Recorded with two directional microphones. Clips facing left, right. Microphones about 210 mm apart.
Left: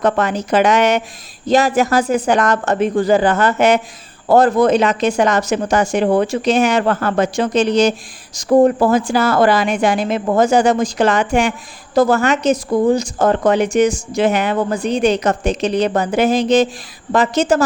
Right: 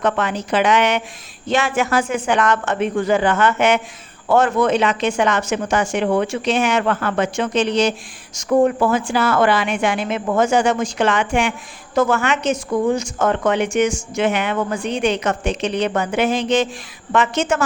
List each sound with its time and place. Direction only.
0.0 s a woman's voice: 40° left (ahead or behind)